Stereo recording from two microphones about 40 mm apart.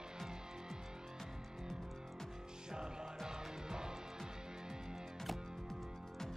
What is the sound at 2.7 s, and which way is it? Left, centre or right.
Music, centre.